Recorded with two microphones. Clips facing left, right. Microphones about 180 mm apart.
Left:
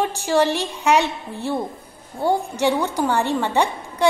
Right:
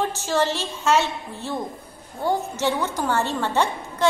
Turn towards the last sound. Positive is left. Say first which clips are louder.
# left 2 dB
turn(degrees=15)  # may be behind; listen again after turning